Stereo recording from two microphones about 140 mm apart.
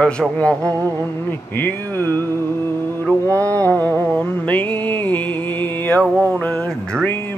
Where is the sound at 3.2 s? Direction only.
25° right (ahead or behind).